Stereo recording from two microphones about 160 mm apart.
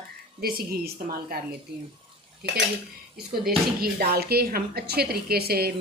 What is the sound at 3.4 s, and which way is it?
Speech, 75° right (ahead or behind).